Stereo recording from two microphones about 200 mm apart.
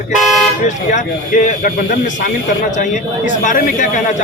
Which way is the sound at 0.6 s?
40° left (ahead or behind).